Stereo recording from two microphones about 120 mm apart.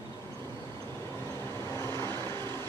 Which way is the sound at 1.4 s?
25° left (ahead or behind).